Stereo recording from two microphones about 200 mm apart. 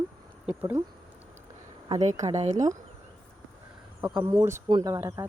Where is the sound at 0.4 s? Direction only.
10° right (ahead or behind).